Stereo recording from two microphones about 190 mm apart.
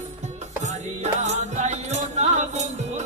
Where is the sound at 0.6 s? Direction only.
35° right (ahead or behind).